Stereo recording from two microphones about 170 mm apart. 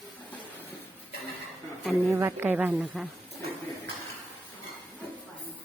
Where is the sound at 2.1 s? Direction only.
15° right (ahead or behind).